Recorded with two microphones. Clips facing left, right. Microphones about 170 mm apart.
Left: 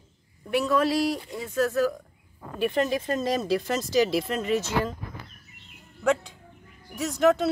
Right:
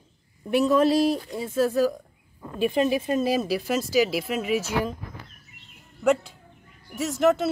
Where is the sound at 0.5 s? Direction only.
20° right (ahead or behind).